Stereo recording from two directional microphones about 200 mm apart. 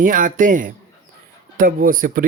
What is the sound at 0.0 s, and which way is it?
Speech, 40° right (ahead or behind).